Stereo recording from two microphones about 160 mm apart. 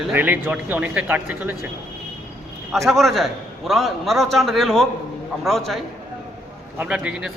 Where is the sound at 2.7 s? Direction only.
Centre (ahead or behind).